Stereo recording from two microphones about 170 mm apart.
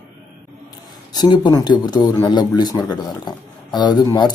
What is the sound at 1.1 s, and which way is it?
Speech, 25° left (ahead or behind).